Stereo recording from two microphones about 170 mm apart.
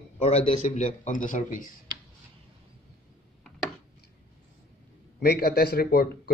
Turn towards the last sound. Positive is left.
turn(degrees=65)  # may be behind; listen again after turning